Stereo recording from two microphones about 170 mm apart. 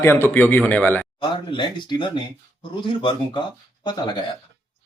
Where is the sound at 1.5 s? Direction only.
30° left (ahead or behind).